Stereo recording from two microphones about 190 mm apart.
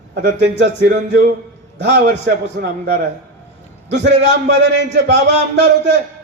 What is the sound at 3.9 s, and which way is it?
A man's voice, 70° right (ahead or behind).